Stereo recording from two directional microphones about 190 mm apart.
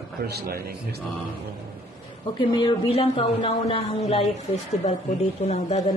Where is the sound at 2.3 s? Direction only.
25° left (ahead or behind).